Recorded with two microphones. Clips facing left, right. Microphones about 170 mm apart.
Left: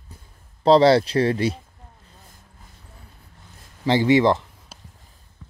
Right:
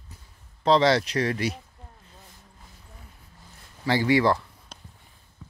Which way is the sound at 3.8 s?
20° left (ahead or behind).